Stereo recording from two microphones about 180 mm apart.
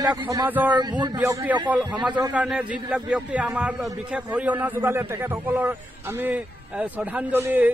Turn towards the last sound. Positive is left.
turn(degrees=-10)  # may be behind; listen again after turning